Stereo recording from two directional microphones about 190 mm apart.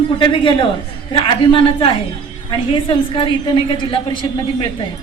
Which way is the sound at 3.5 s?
25° left (ahead or behind).